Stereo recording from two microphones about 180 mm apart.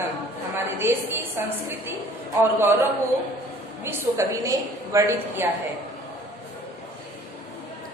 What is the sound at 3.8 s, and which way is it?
A woman's voice, 15° right (ahead or behind).